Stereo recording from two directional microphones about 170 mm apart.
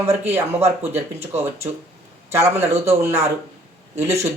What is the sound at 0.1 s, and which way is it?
Speech, 15° right (ahead or behind).